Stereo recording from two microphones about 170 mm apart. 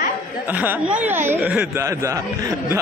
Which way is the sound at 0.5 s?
10° right (ahead or behind).